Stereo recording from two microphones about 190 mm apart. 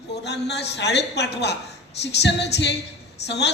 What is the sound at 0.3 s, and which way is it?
A man's voice, 60° left (ahead or behind).